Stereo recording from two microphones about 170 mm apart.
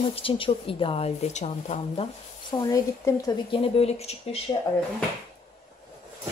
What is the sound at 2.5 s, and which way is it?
A woman's voice, 20° left (ahead or behind).